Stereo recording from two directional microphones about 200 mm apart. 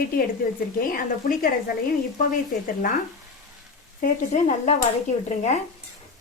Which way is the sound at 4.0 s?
35° left (ahead or behind).